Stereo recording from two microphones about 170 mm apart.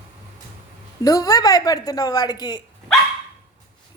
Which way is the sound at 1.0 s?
20° left (ahead or behind).